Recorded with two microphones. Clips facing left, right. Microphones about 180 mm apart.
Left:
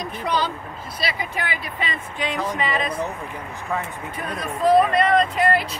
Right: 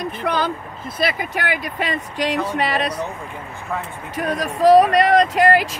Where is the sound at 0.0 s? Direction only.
55° right (ahead or behind).